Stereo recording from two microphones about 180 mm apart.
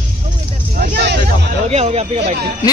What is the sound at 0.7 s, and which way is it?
Speech, 55° right (ahead or behind).